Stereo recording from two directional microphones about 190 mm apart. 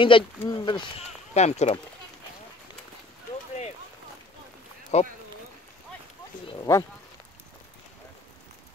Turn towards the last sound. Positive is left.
turn(degrees=20)  # may be behind; listen again after turning